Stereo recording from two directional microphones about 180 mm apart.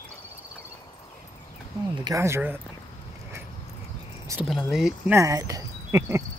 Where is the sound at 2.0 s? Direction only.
15° right (ahead or behind).